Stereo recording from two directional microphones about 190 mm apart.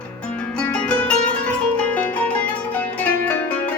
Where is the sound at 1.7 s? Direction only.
5° left (ahead or behind).